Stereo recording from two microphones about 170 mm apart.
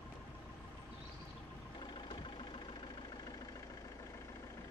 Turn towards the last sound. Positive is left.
turn(degrees=25)  # may be behind; listen again after turning